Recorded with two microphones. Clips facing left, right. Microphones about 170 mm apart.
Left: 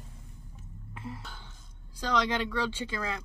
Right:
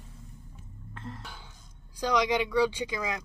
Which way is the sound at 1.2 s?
10° right (ahead or behind).